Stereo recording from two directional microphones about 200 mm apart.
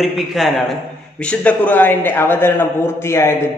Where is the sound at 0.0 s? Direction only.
Centre (ahead or behind).